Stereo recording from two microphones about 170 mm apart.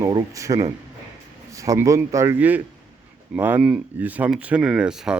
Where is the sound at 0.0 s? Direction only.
25° right (ahead or behind).